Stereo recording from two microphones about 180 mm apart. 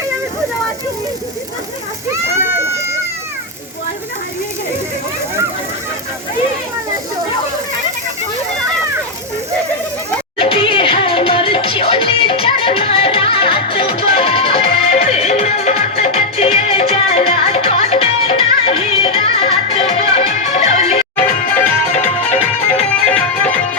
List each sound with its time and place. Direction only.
10.3 s music: 30° left (ahead or behind)
21.2 s music: 10° left (ahead or behind)
22.8 s music: 5° left (ahead or behind)